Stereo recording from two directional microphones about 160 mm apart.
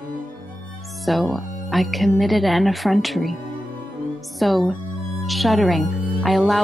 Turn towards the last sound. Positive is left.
turn(degrees=0)  # may be behind; listen again after turning